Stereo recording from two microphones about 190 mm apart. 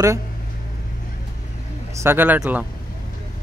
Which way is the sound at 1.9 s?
15° right (ahead or behind).